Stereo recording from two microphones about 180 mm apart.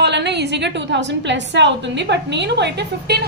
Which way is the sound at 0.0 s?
70° right (ahead or behind).